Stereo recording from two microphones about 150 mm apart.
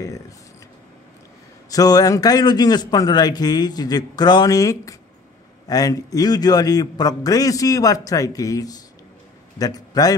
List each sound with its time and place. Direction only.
1.7 s a man's voice: 25° left (ahead or behind)